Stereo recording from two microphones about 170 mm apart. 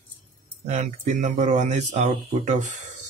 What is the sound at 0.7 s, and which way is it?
Speech, 45° right (ahead or behind).